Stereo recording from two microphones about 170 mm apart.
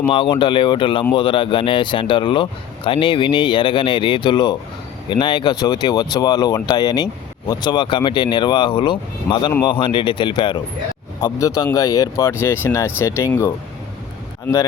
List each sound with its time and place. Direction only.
0.1 s speech: 30° left (ahead or behind)